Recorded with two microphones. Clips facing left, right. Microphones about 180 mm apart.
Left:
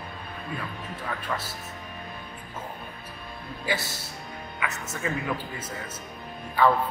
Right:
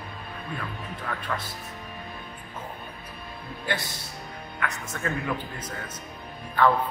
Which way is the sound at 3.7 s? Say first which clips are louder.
Left 1 dB; 5° left (ahead or behind).